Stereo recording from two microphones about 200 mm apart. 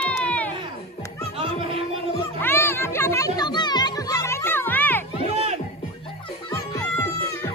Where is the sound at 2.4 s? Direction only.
10° left (ahead or behind).